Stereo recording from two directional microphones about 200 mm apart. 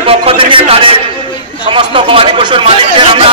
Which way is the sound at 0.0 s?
25° right (ahead or behind).